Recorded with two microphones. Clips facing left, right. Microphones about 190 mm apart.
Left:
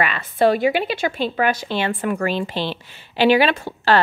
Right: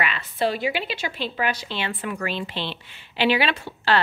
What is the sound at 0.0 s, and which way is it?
Speech, 50° left (ahead or behind).